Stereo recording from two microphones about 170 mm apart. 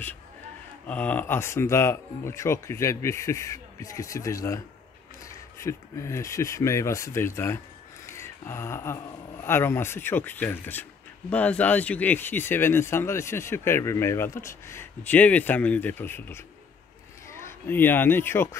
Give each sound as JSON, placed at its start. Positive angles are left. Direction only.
{"t": 0.8, "sound": "speech", "side_deg": 10}